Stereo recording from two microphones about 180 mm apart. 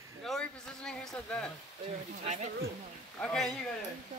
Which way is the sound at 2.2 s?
40° right (ahead or behind).